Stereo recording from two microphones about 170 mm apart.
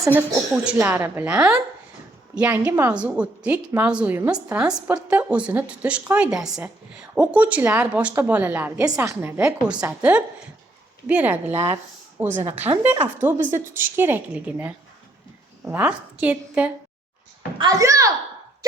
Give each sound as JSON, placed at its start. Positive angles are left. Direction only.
{"t": 0.0, "sound": "a woman's voice", "side_deg": -10}
{"t": 13.4, "sound": "a woman's voice", "side_deg": -50}
{"t": 13.7, "sound": "a woman's voice", "side_deg": -10}
{"t": 17.6, "sound": "a child's voice", "side_deg": -20}